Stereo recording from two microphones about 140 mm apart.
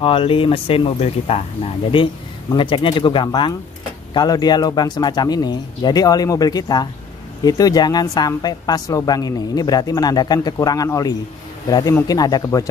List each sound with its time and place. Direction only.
0.0 s a woman's voice: 40° left (ahead or behind); by 12.6 s 25° left (ahead or behind)